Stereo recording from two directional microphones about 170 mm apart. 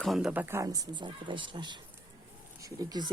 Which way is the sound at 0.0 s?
Centre (ahead or behind).